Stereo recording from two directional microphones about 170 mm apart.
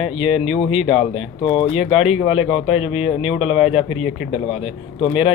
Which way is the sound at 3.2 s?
5° right (ahead or behind).